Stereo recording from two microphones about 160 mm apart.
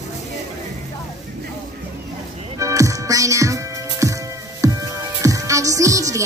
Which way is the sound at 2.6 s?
20° right (ahead or behind).